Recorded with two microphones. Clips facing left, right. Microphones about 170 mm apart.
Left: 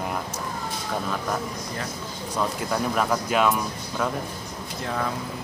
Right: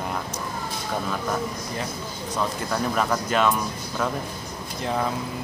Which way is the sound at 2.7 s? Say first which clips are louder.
Even; 5° left (ahead or behind).